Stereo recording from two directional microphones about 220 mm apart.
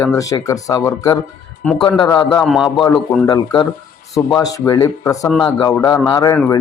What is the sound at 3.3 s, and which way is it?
A man's voice, 20° left (ahead or behind).